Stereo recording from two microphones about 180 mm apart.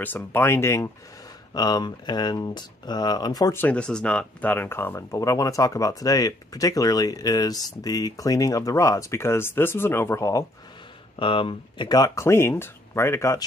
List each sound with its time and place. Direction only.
0.0 s speech: 10° left (ahead or behind)
3.6 s speech: 5° left (ahead or behind)
11.1 s speech: 30° left (ahead or behind)